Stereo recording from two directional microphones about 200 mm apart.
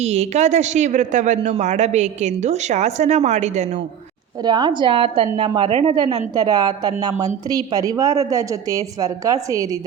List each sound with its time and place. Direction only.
0.0 s speech: 35° right (ahead or behind)
4.4 s a woman's voice: 20° right (ahead or behind)